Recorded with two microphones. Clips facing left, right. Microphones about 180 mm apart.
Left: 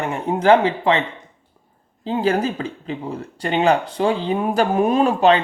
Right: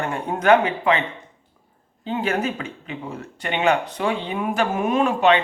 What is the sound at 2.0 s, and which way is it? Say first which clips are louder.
Speech: left 4 dB; 35° left (ahead or behind).